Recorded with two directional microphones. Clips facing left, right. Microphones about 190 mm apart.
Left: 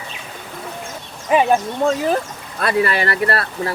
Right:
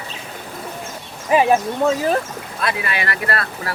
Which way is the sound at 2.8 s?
40° left (ahead or behind).